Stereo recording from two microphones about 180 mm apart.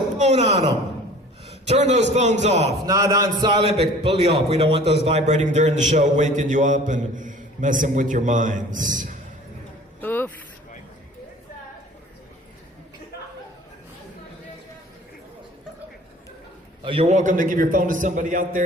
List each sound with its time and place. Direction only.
0.2 s a man's voice: 35° right (ahead or behind)
2.8 s a man's voice: 20° right (ahead or behind); by 9.1 s 45° right (ahead or behind)
10.0 s a sound: 10° left (ahead or behind)
16.8 s a man's voice: 30° right (ahead or behind); by 18.6 s 45° right (ahead or behind)